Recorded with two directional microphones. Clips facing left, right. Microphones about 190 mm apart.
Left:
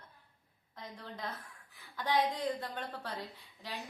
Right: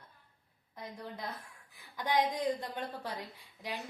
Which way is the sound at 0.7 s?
10° right (ahead or behind).